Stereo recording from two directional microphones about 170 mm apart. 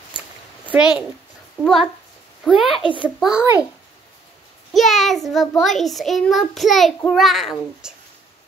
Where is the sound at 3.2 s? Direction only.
5° right (ahead or behind).